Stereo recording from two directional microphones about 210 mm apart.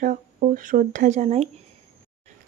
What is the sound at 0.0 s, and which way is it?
Speech, 40° right (ahead or behind).